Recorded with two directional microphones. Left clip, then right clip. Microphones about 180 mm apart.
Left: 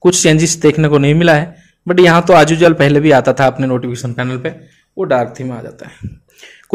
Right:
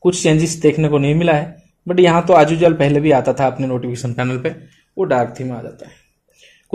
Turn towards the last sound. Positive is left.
turn(degrees=30)  # may be behind; listen again after turning